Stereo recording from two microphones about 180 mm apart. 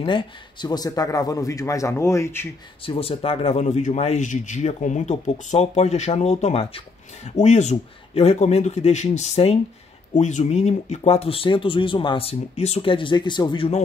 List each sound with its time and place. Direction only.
0.0 s a man's voice: 25° left (ahead or behind)
2.8 s speech: 30° left (ahead or behind)